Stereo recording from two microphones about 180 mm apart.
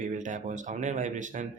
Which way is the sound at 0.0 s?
45° right (ahead or behind).